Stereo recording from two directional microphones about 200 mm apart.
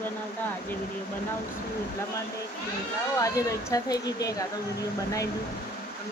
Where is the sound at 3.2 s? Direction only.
15° left (ahead or behind).